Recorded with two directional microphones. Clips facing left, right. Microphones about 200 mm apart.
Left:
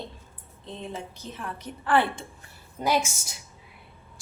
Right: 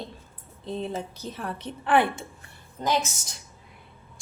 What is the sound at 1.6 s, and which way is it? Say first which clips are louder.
Speech: right 1 dB; 25° right (ahead or behind).